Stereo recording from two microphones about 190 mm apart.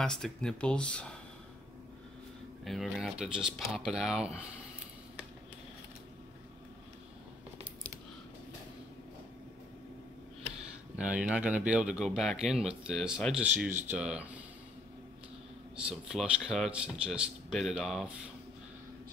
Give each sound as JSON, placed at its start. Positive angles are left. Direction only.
{"t": 0.0, "sound": "speech", "side_deg": 5}
{"t": 2.6, "sound": "speech", "side_deg": 0}
{"t": 11.0, "sound": "speech", "side_deg": -5}
{"t": 15.9, "sound": "speech", "side_deg": -5}